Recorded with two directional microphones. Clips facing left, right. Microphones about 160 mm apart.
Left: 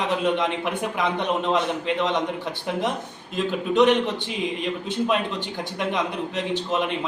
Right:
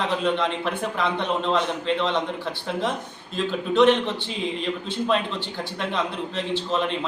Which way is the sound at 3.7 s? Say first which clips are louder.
Even; 15° left (ahead or behind).